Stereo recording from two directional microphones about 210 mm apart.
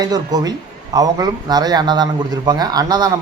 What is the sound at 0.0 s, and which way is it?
A man's voice, 20° right (ahead or behind).